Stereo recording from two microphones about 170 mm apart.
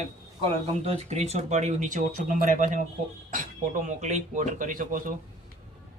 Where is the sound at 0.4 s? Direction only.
35° right (ahead or behind); by 5.1 s 55° right (ahead or behind).